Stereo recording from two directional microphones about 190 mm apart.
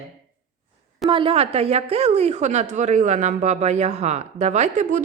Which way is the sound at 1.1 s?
30° right (ahead or behind).